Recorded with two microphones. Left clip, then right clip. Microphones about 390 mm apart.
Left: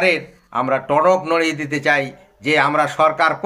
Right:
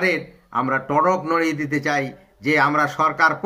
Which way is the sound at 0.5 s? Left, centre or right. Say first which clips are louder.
Left 3 dB; centre.